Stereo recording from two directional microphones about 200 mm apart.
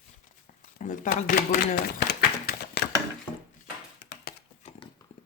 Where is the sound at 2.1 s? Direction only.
50° left (ahead or behind).